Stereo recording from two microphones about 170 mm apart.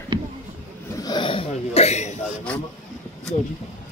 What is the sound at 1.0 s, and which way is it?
Speech, 25° left (ahead or behind).